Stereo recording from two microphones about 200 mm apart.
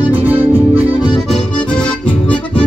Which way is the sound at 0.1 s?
10° right (ahead or behind).